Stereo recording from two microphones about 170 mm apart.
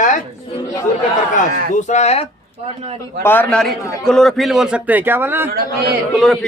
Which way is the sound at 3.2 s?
10° left (ahead or behind).